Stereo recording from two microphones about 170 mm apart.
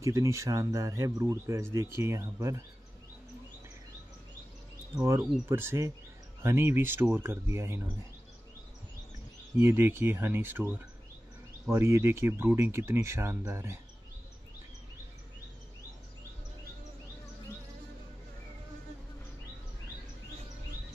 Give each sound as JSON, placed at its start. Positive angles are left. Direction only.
{"t": 0.0, "sound": "speech", "side_deg": -20}
{"t": 4.9, "sound": "speech", "side_deg": -15}
{"t": 9.6, "sound": "speech", "side_deg": -15}
{"t": 11.7, "sound": "speech", "side_deg": -15}